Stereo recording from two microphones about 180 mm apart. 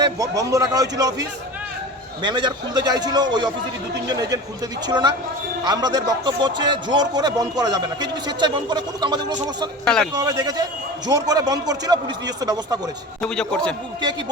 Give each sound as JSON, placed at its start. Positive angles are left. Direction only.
{"t": 0.0, "sound": "speech", "side_deg": -20}
{"t": 9.8, "sound": "a man's voice", "side_deg": 5}
{"t": 10.1, "sound": "speech", "side_deg": -20}
{"t": 13.2, "sound": "a man's voice", "side_deg": 5}